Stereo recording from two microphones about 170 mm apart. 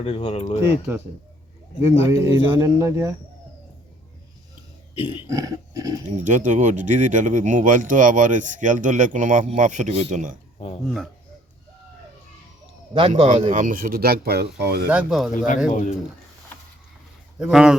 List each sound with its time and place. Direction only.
0.0 s speech: 35° left (ahead or behind)
0.6 s speech: 15° right (ahead or behind)
5.3 s a sound: 20° right (ahead or behind)
6.2 s speech: 45° right (ahead or behind)
10.8 s speech: centre (ahead or behind)
12.9 s speech: 35° right (ahead or behind)
13.5 s speech: 50° right (ahead or behind); by 14.8 s 70° right (ahead or behind)
14.8 s speech: 5° right (ahead or behind)
15.7 s speech: 45° left (ahead or behind)
17.4 s speech: 5° right (ahead or behind)